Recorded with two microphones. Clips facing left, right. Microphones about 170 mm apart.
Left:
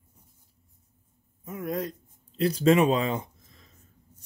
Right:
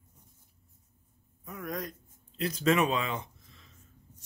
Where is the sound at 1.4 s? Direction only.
25° left (ahead or behind); by 3.7 s 40° left (ahead or behind).